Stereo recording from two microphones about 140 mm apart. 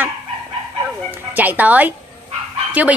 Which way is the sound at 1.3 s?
10° right (ahead or behind).